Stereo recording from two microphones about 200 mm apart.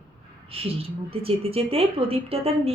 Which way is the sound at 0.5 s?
30° right (ahead or behind).